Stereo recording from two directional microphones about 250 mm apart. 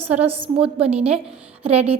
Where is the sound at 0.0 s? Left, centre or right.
Right.